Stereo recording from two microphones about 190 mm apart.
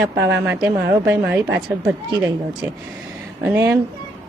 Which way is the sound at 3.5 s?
15° right (ahead or behind).